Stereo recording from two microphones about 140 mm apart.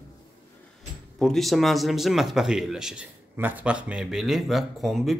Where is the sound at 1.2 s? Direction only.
Centre (ahead or behind).